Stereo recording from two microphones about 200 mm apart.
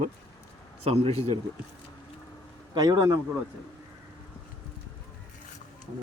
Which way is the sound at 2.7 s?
20° right (ahead or behind).